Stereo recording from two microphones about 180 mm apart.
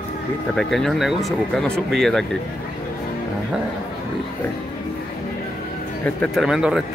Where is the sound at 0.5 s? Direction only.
Centre (ahead or behind).